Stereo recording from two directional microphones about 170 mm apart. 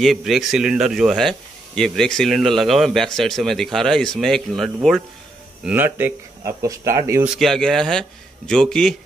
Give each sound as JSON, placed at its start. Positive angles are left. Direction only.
{"t": 0.0, "sound": "speech", "side_deg": 0}
{"t": 5.7, "sound": "speech", "side_deg": -10}
{"t": 7.3, "sound": "speech", "side_deg": 0}